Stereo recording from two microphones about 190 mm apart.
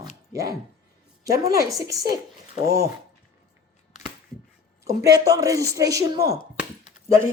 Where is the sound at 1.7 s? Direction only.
20° right (ahead or behind).